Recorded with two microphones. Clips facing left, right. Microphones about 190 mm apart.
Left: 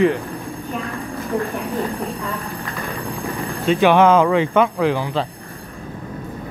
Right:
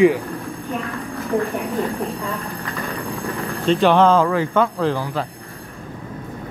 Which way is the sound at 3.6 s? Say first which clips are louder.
Left 1 dB; 10° left (ahead or behind).